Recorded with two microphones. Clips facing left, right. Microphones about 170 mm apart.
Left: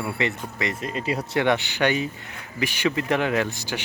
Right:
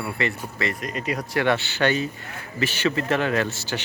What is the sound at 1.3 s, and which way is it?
Speech, 20° left (ahead or behind).